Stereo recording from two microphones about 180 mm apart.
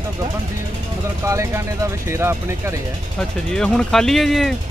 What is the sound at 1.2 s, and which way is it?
Speech, 15° right (ahead or behind).